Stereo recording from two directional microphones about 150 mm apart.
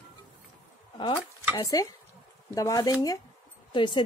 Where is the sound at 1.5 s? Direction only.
25° left (ahead or behind).